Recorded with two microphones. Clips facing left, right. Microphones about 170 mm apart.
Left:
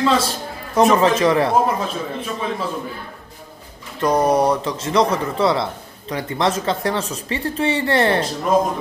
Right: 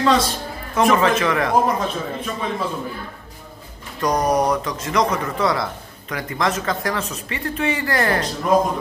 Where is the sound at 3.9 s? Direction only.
25° left (ahead or behind).